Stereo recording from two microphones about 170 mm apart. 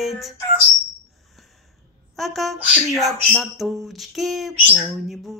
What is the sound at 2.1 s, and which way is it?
Speech, centre (ahead or behind).